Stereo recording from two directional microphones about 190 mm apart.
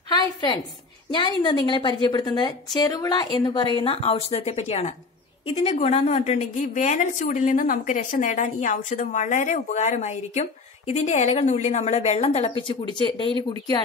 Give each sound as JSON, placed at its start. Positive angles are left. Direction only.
{"t": 1.1, "sound": "a woman's voice", "side_deg": 25}